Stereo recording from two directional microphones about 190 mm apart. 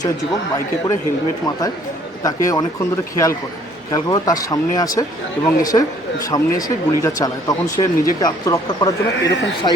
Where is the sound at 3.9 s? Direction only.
20° left (ahead or behind).